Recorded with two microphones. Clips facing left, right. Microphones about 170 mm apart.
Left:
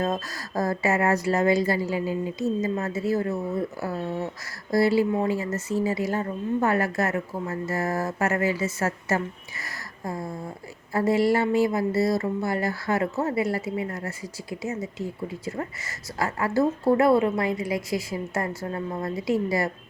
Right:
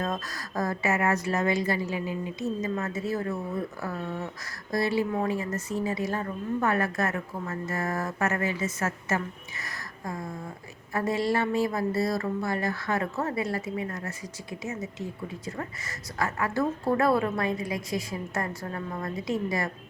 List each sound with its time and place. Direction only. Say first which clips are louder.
0.0 s a woman's voice: left 4 dB; 30° left (ahead or behind)